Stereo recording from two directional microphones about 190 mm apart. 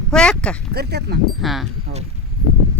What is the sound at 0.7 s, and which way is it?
Speech, 55° right (ahead or behind).